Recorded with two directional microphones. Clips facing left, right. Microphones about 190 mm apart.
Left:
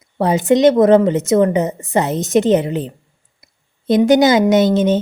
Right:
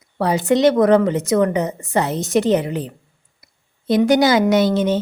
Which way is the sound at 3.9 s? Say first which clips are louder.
Left 3 dB; 20° left (ahead or behind).